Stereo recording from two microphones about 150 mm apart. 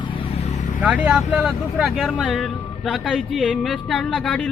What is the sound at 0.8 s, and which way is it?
Speech, 10° right (ahead or behind).